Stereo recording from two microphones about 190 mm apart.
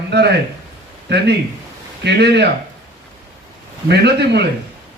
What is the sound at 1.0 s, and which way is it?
A man's voice, 65° right (ahead or behind).